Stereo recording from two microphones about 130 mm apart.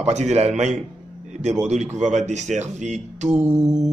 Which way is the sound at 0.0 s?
60° right (ahead or behind).